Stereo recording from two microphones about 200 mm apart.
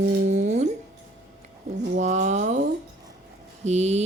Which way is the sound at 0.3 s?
35° right (ahead or behind).